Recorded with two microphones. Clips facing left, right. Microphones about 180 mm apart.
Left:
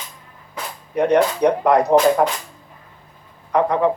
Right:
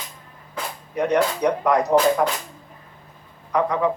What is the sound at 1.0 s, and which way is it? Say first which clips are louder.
Speech: left 4 dB; 60° left (ahead or behind).